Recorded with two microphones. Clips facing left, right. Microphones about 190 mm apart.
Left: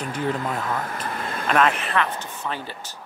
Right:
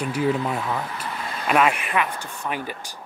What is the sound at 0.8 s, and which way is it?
Air conditioning, 45° left (ahead or behind).